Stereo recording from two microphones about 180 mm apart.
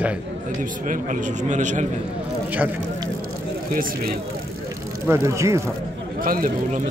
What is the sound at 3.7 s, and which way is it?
Speech, 50° right (ahead or behind).